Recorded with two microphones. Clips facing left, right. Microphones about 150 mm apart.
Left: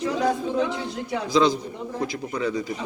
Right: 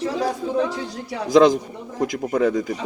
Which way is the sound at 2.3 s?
50° right (ahead or behind).